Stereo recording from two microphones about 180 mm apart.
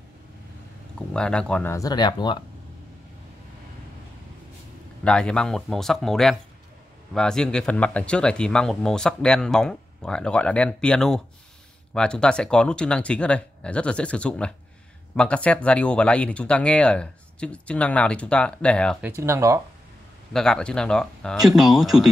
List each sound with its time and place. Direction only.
0.9 s speech: 5° left (ahead or behind); by 2.3 s 25° left (ahead or behind)
5.0 s speech: 5° left (ahead or behind)
19.0 s speech: 15° right (ahead or behind)
20.3 s speech: 5° left (ahead or behind)